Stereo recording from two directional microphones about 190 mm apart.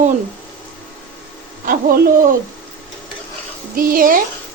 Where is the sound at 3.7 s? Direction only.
50° right (ahead or behind).